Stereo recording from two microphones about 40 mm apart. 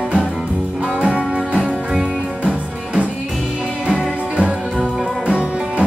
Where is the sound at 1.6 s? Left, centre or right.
Centre.